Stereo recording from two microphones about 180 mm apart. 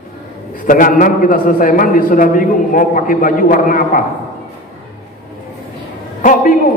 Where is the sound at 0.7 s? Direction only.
50° left (ahead or behind).